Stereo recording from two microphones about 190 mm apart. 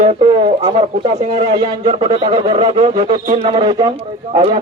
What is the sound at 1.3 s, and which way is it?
Speech, 25° right (ahead or behind).